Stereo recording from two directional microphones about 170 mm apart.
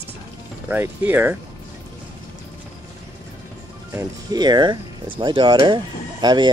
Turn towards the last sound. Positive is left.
turn(degrees=-25)  # may be behind; listen again after turning